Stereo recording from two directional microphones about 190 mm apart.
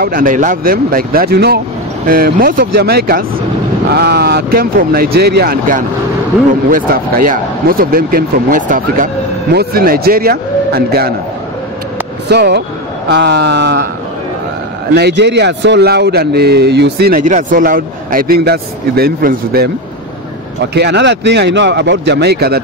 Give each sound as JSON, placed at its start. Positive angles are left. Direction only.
{"t": 0.0, "sound": "speech", "side_deg": -45}
{"t": 12.3, "sound": "a man's voice", "side_deg": -60}
{"t": 15.0, "sound": "a man's voice", "side_deg": -65}
{"t": 20.7, "sound": "a man's voice", "side_deg": -65}